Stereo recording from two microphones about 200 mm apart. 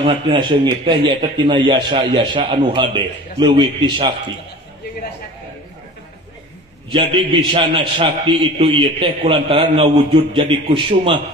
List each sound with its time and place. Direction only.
0.0 s a man's voice: 25° right (ahead or behind)
6.9 s a man's voice: 25° right (ahead or behind)